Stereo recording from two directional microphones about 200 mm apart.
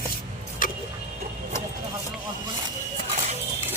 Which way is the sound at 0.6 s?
40° left (ahead or behind).